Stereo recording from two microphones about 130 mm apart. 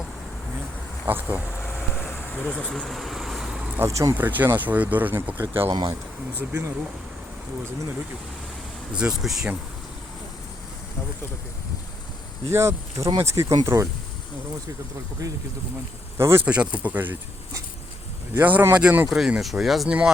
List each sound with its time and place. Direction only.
1.0 s speech: 15° right (ahead or behind)
1.6 s vehicle: 15° left (ahead or behind); by 3.6 s 5° right (ahead or behind)
3.8 s speech: 25° right (ahead or behind)
5.7 s speech: 30° right (ahead or behind)
6.5 s speech: 20° right (ahead or behind)
8.9 s speech: 5° right (ahead or behind)
12.5 s speech: 20° right (ahead or behind)
16.1 s speech: 20° right (ahead or behind)
16.5 s speech: 10° right (ahead or behind)
18.3 s speech: 15° right (ahead or behind)